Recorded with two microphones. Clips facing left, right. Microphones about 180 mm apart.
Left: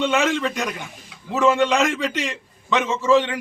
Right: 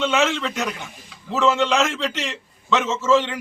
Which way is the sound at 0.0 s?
15° left (ahead or behind).